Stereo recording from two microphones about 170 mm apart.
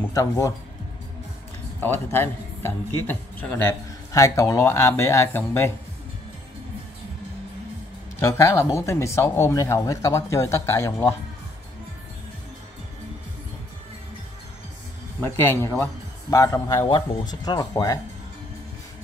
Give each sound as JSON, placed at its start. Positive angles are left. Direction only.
{"t": 0.1, "sound": "speech", "side_deg": 20}
{"t": 1.8, "sound": "a man's voice", "side_deg": 15}
{"t": 8.2, "sound": "a man's voice", "side_deg": 15}
{"t": 15.1, "sound": "a man's voice", "side_deg": 15}